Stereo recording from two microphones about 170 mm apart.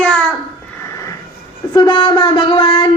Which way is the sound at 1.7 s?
25° left (ahead or behind).